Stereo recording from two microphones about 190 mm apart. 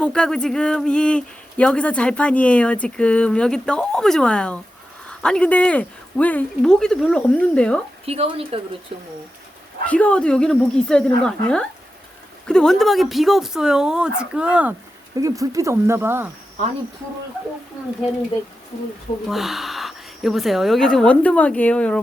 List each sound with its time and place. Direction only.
0.0 s speech: 5° left (ahead or behind)
8.0 s speech: 30° right (ahead or behind)
9.8 s speech: 5° left (ahead or behind)
15.1 s speech: 15° right (ahead or behind)
19.3 s speech: centre (ahead or behind)